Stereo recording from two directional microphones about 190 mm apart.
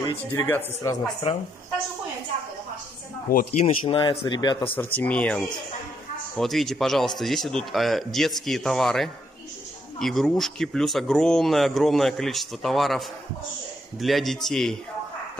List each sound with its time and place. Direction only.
0.1 s speech: 15° left (ahead or behind)
3.3 s speech: 45° left (ahead or behind)
3.8 s speech: 25° left (ahead or behind)
4.7 s speech: 10° left (ahead or behind)